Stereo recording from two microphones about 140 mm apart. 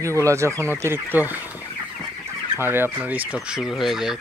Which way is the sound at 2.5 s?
15° right (ahead or behind).